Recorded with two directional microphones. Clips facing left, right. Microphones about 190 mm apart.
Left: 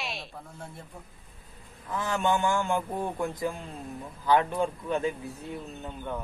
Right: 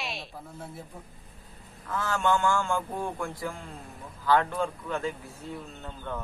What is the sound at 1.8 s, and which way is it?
A man's voice, 20° left (ahead or behind).